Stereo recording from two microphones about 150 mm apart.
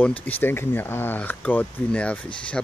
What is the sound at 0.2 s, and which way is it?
Speech, 10° left (ahead or behind).